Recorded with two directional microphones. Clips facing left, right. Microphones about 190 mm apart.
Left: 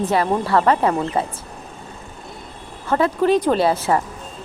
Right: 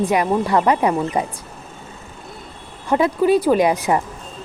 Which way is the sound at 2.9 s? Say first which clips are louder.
Right 1 dB; 15° right (ahead or behind).